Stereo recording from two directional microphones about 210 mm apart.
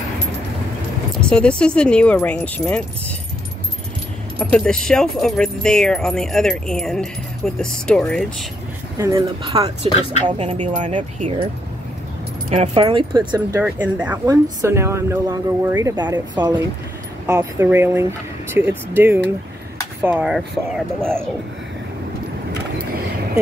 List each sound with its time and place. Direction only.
1.1 s speech: 5° left (ahead or behind)
4.4 s speech: 5° left (ahead or behind)
9.1 s speech: 20° right (ahead or behind)
12.4 s speech: 30° right (ahead or behind); by 20.4 s 5° right (ahead or behind)